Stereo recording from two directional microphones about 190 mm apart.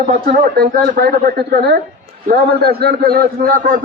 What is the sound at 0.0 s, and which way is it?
Speech, 40° right (ahead or behind).